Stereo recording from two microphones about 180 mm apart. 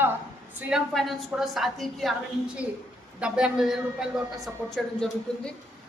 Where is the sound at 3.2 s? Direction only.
5° right (ahead or behind).